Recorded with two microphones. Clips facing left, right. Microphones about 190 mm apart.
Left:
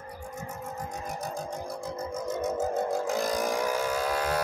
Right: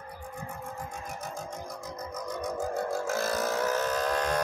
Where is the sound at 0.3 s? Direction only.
40° left (ahead or behind).